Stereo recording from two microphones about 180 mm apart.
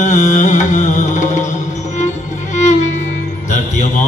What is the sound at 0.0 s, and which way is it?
Music, 45° left (ahead or behind).